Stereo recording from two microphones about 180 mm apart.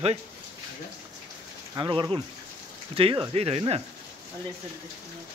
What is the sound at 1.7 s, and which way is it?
Speech, 25° right (ahead or behind).